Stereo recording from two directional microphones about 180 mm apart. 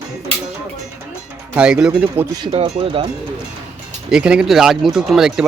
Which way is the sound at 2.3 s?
25° right (ahead or behind).